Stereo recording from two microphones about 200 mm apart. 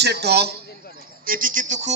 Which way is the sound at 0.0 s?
55° right (ahead or behind).